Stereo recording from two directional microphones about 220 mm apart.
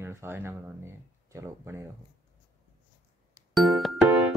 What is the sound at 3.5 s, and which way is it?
Music, centre (ahead or behind).